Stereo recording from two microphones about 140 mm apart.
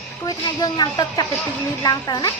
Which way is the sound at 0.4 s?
25° left (ahead or behind).